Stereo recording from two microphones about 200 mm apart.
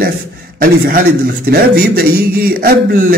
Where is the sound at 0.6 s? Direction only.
50° right (ahead or behind).